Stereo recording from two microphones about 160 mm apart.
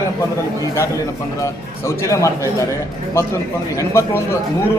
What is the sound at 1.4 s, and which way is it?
A man's voice, 20° left (ahead or behind).